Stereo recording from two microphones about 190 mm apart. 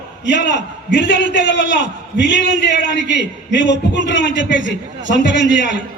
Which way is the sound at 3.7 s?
70° left (ahead or behind).